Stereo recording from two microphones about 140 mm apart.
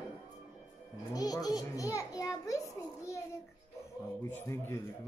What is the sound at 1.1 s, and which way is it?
A man's voice, 25° left (ahead or behind).